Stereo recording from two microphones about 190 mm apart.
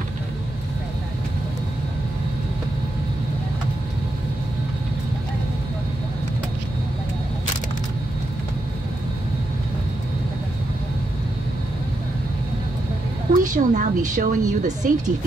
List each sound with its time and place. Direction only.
13.3 s a woman's voice: 40° right (ahead or behind)